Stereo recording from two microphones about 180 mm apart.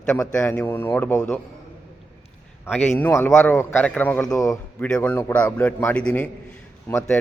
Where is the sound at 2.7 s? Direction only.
10° left (ahead or behind).